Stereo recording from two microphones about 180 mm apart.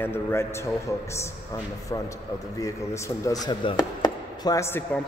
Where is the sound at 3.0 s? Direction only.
20° left (ahead or behind).